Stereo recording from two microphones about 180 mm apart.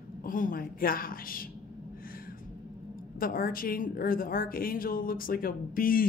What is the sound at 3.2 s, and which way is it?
A woman's voice, 50° left (ahead or behind).